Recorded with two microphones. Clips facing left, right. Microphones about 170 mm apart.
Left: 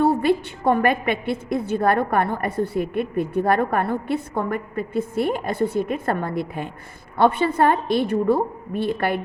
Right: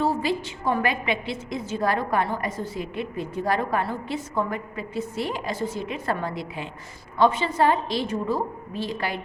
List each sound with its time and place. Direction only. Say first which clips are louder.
0.0 s a woman's voice: left 6 dB; 60° left (ahead or behind)